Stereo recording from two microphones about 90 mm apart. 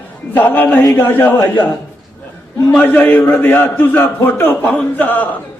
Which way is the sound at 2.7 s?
20° left (ahead or behind).